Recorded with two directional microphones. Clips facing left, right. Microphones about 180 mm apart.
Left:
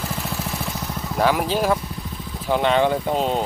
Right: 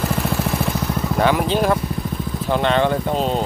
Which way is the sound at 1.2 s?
5° left (ahead or behind).